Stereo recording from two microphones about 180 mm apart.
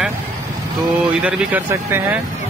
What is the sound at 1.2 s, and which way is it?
Speech, 10° right (ahead or behind).